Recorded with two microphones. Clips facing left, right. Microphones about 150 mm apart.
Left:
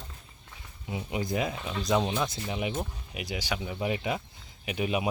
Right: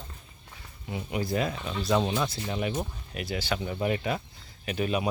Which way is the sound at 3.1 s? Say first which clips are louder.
Right 3 dB; 15° left (ahead or behind).